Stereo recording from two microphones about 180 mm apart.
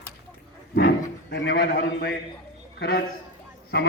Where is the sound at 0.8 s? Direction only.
60° left (ahead or behind).